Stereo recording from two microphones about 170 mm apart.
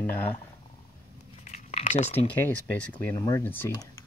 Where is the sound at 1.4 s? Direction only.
40° left (ahead or behind).